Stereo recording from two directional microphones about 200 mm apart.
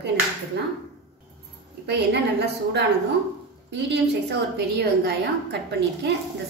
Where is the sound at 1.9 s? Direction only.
55° right (ahead or behind).